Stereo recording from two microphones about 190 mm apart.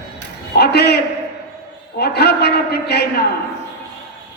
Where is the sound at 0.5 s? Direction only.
60° left (ahead or behind).